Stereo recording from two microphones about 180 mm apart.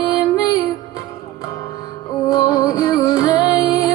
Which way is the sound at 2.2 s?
20° left (ahead or behind).